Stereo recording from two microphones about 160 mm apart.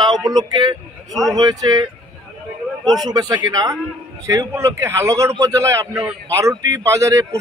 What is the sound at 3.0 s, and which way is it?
A man's voice, 25° right (ahead or behind).